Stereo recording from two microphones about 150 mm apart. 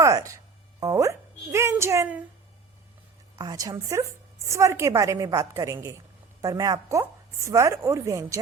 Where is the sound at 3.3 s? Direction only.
25° right (ahead or behind).